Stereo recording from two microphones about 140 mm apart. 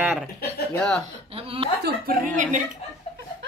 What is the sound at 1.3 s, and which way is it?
Speech, 45° right (ahead or behind).